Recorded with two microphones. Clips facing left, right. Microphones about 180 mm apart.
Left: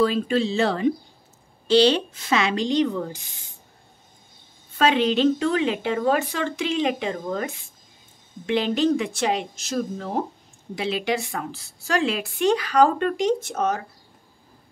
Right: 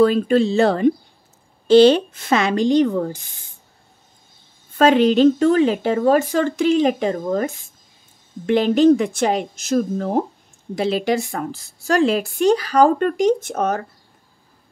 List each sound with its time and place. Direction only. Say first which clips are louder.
0.0 s a woman's voice: right 6 dB; 50° right (ahead or behind)
4.7 s a woman's voice: right 6 dB; 45° right (ahead or behind)